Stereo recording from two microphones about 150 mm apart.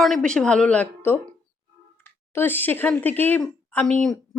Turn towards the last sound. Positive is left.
turn(degrees=5)  # may be behind; listen again after turning